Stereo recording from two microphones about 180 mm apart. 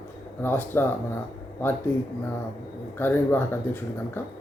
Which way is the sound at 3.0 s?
10° left (ahead or behind).